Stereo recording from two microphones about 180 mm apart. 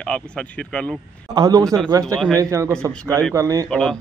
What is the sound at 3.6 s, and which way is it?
Speech, 5° left (ahead or behind).